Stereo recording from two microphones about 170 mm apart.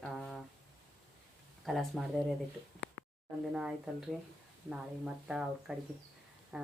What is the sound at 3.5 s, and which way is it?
Speech, 5° right (ahead or behind).